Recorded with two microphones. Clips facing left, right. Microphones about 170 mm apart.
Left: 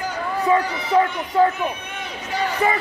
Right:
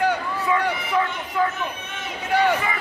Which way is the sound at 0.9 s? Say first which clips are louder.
Left 8 dB; 35° left (ahead or behind).